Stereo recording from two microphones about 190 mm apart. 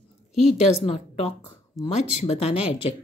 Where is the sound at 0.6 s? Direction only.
30° left (ahead or behind).